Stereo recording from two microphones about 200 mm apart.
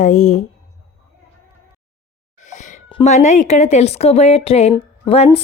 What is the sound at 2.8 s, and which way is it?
Speech, 30° left (ahead or behind).